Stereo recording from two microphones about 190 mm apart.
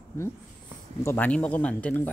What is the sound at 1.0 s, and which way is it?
Speech, 10° left (ahead or behind).